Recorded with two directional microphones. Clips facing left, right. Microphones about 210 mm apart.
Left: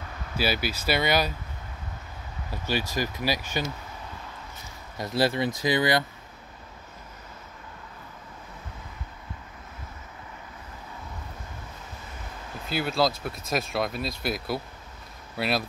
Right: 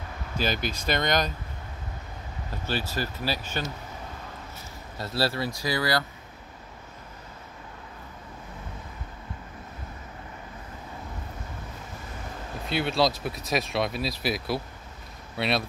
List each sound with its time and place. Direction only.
0.4 s speech: 5° left (ahead or behind)
2.5 s speech: 10° left (ahead or behind)
4.9 s speech: 15° left (ahead or behind)
12.6 s speech: centre (ahead or behind)